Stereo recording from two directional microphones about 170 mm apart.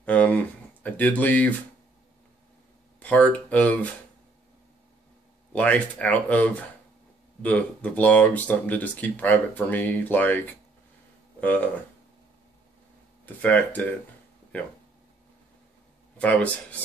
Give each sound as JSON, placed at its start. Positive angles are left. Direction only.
{"t": 0.0, "sound": "a sound", "side_deg": 10}
{"t": 0.8, "sound": "speech", "side_deg": 10}
{"t": 3.0, "sound": "speech", "side_deg": 10}
{"t": 5.5, "sound": "speech", "side_deg": 5}
{"t": 13.2, "sound": "speech", "side_deg": 10}
{"t": 16.2, "sound": "speech", "side_deg": 10}